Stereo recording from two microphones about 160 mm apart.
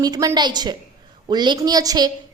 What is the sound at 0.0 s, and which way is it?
A woman's voice, 25° right (ahead or behind).